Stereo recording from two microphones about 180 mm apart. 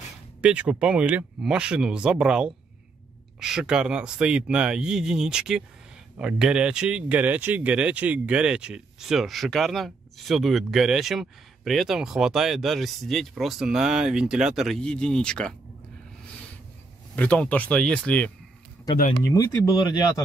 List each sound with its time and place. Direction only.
0.4 s speech: 5° right (ahead or behind)
17.1 s speech: 5° left (ahead or behind)
19.1 s speech: 20° left (ahead or behind)